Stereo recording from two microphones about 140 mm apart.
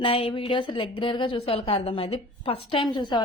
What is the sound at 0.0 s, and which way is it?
A woman's voice, 40° left (ahead or behind).